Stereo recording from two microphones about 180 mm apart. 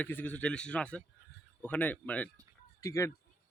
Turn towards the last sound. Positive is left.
turn(degrees=15)  # may be behind; listen again after turning